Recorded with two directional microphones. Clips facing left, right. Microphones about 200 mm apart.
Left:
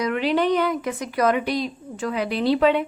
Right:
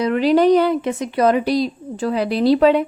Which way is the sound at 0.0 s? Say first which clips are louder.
Right 7 dB; 35° right (ahead or behind).